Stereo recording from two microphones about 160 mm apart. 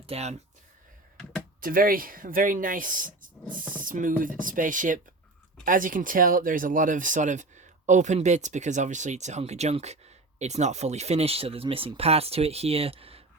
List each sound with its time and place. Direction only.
0.0 s speech: 40° right (ahead or behind)
1.1 s a sound: 5° left (ahead or behind)
1.6 s speech: 65° right (ahead or behind); by 13.2 s 35° right (ahead or behind)